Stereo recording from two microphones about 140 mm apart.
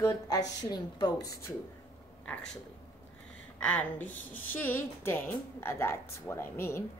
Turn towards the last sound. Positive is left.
turn(degrees=15)  # may be behind; listen again after turning